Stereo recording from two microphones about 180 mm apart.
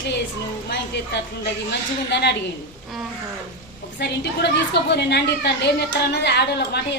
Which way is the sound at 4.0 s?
75° left (ahead or behind).